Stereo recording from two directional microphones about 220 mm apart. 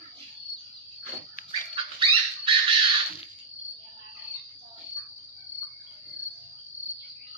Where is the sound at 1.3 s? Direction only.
35° left (ahead or behind).